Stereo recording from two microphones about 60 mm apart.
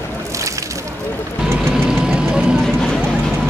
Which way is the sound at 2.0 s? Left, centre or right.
Centre.